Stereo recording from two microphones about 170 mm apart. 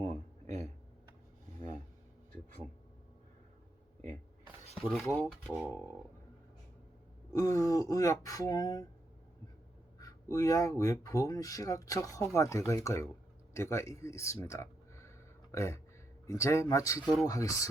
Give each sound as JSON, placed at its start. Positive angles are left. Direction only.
{"t": 4.8, "sound": "speech", "side_deg": 0}
{"t": 5.5, "sound": "speech", "side_deg": -10}
{"t": 7.3, "sound": "speech", "side_deg": 20}
{"t": 10.0, "sound": "speech", "side_deg": 20}